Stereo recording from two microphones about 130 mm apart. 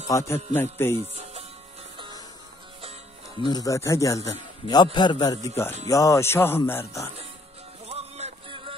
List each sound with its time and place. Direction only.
0.1 s a man's voice: 25° left (ahead or behind)
2.8 s music: 50° right (ahead or behind)
3.4 s a man's voice: 30° left (ahead or behind)
7.8 s music: 55° right (ahead or behind)
8.5 s a sound: 40° right (ahead or behind)